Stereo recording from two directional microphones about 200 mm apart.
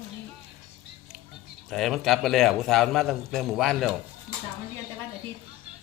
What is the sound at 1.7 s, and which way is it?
A man's voice, centre (ahead or behind).